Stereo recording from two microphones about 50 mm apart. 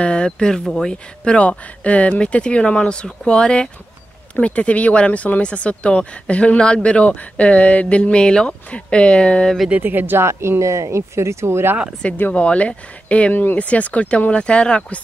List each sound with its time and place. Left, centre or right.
0.0 s speech: centre
0.7 s speech: centre
1.2 s speech: left
9.8 s speech: right
10.6 s speech: right
12.3 s speech: left
13.3 s speech: left